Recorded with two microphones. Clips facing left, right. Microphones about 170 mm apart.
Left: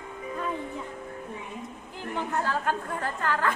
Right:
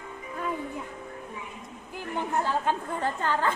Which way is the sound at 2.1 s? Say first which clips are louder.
Right 1 dB; 15° right (ahead or behind).